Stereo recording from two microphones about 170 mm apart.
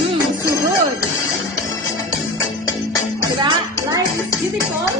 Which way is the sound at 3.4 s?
25° right (ahead or behind).